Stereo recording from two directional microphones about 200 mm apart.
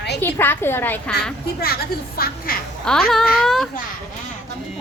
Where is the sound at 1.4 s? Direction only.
50° left (ahead or behind).